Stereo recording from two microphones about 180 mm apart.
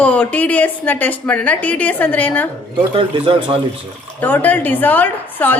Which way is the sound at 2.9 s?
30° right (ahead or behind).